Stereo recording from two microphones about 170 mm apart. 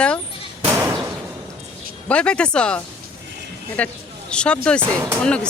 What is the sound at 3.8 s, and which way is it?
Speech, 10° left (ahead or behind).